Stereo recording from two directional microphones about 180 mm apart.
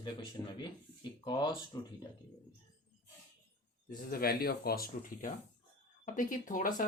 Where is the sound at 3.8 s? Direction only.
55° left (ahead or behind).